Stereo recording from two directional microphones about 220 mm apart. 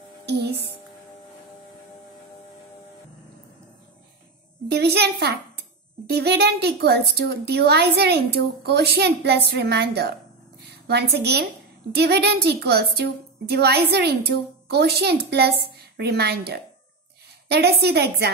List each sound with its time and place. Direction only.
4.6 s a child's voice: 50° right (ahead or behind)